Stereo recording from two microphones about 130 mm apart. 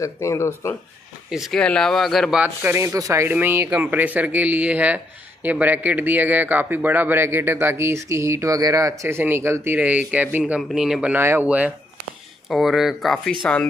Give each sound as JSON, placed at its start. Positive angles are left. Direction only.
{"t": 0.0, "sound": "speech", "side_deg": 20}
{"t": 1.3, "sound": "speech", "side_deg": -5}
{"t": 2.4, "sound": "speech", "side_deg": -15}